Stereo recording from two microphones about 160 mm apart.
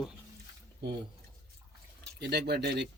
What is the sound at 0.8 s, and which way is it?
Speech, 90° right.